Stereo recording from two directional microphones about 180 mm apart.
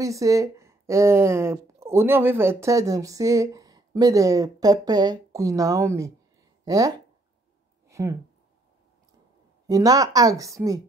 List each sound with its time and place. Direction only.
0.0 s speech: 20° right (ahead or behind)
9.7 s speech: 20° right (ahead or behind)